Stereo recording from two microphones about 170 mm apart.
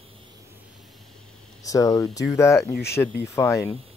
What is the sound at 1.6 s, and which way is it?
Speech, 20° left (ahead or behind).